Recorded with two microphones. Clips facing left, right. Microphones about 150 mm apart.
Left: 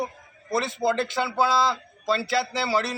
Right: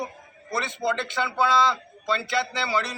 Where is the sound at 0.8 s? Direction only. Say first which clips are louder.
Left 1 dB; 25° left (ahead or behind).